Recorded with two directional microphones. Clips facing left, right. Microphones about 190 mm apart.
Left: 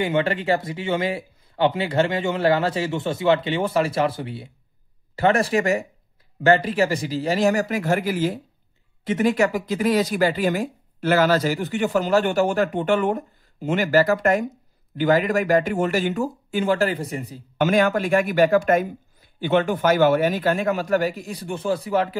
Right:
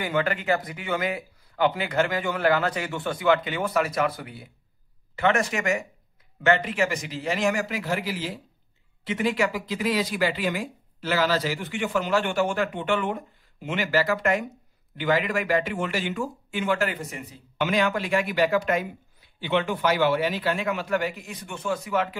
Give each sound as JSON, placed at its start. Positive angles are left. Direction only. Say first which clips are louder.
{"t": 0.0, "sound": "a man's voice", "louder": "left 4 dB", "side_deg": 25}